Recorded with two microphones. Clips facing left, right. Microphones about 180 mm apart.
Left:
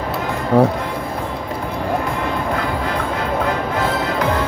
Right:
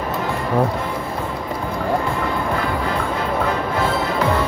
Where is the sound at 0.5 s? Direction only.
70° left (ahead or behind).